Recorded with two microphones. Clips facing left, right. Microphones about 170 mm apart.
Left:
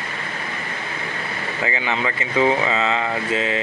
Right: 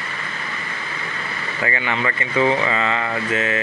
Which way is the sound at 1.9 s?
15° left (ahead or behind).